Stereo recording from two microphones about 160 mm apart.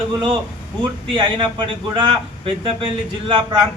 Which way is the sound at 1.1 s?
30° right (ahead or behind).